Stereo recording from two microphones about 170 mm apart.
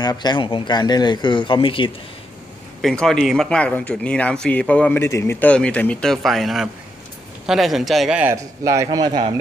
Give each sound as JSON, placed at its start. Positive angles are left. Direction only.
{"t": 0.0, "sound": "speech", "side_deg": 25}
{"t": 2.8, "sound": "speech", "side_deg": 0}
{"t": 8.6, "sound": "a man's voice", "side_deg": -20}